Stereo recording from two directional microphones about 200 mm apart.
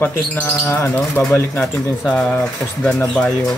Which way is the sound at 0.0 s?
10° left (ahead or behind).